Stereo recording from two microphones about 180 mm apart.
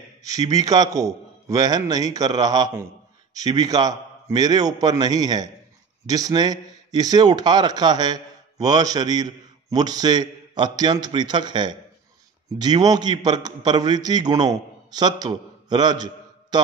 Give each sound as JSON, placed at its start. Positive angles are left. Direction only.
{"t": 0.2, "sound": "speech", "side_deg": -20}